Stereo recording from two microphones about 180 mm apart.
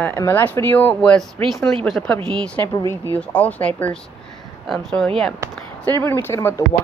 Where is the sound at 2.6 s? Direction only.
15° left (ahead or behind).